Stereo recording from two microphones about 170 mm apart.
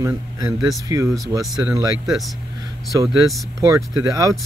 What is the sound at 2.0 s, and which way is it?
Speech, centre (ahead or behind).